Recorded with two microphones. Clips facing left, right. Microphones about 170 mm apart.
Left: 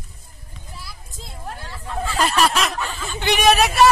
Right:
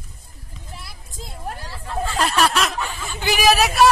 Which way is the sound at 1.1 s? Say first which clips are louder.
Right 3 dB; 40° right (ahead or behind).